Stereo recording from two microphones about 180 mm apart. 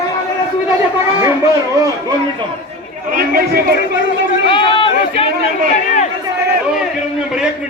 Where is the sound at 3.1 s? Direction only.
55° right (ahead or behind).